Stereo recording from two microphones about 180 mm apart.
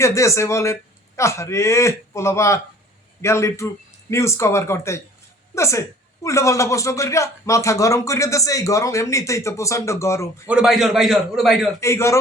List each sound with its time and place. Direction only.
0.0 s a man's voice: 15° left (ahead or behind)
10.4 s a man's voice: 5° right (ahead or behind)
11.8 s a man's voice: 15° left (ahead or behind)